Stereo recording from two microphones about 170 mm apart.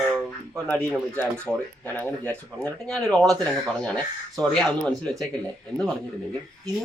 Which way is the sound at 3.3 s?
5° left (ahead or behind).